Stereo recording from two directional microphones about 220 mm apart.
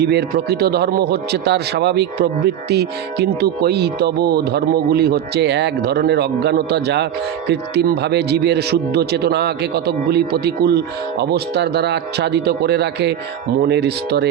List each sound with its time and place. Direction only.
0.0 s speech: 50° right (ahead or behind)